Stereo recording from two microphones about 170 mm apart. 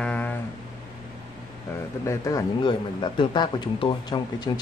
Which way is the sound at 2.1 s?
20° left (ahead or behind).